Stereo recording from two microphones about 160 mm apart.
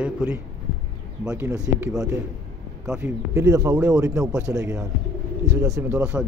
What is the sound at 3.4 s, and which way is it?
A man's voice, 20° right (ahead or behind).